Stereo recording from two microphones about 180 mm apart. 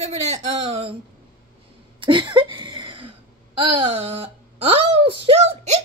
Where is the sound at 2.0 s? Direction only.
25° right (ahead or behind).